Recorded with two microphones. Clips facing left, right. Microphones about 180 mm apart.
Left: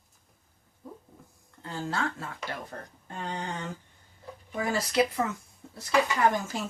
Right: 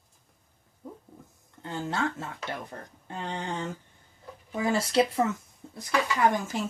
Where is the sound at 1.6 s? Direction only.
20° right (ahead or behind).